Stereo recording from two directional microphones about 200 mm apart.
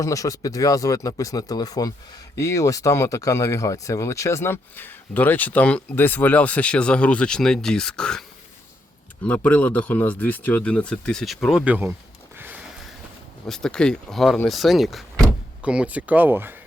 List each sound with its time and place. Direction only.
0.0 s speech: 15° left (ahead or behind)
9.2 s speech: 5° left (ahead or behind)
13.5 s speech: 5° left (ahead or behind)